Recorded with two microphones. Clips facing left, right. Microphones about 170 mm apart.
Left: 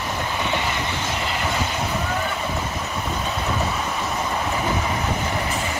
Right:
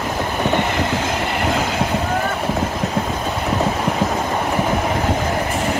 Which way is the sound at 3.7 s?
60° right (ahead or behind).